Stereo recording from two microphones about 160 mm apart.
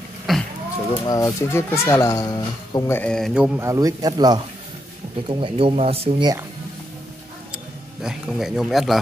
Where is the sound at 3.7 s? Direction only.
20° right (ahead or behind); by 6.3 s 35° right (ahead or behind).